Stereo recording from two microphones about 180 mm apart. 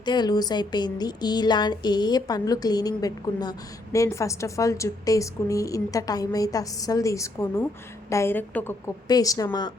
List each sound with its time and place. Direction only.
0.0 s a woman's voice: 25° left (ahead or behind)